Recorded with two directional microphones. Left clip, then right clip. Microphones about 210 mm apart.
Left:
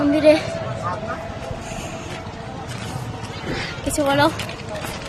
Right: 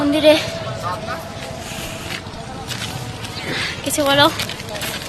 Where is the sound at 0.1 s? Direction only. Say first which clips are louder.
Right 2 dB; centre (ahead or behind).